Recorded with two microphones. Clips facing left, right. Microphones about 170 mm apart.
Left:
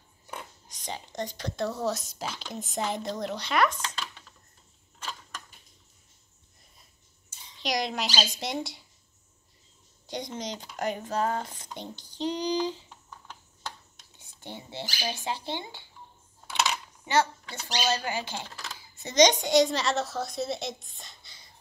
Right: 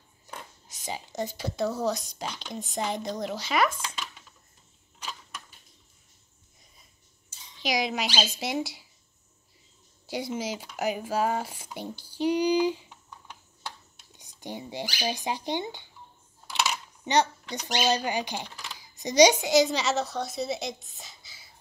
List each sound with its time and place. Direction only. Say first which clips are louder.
0.7 s speech: right 4 dB; 5° right (ahead or behind)
7.5 s speech: right 2 dB; centre (ahead or behind)
10.0 s female singing: right 4 dB; 5° right (ahead or behind)
13.3 s typing: even; 10° right (ahead or behind)
15.0 s female singing: right 3 dB; 15° right (ahead or behind)
17.0 s a child's voice: right 1 dB; 20° right (ahead or behind)